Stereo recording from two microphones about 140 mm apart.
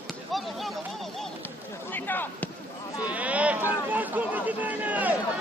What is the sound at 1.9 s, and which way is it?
Basketball bounce, 15° left (ahead or behind).